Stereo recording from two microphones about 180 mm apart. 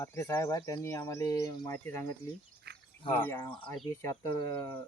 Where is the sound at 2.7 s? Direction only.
65° right (ahead or behind).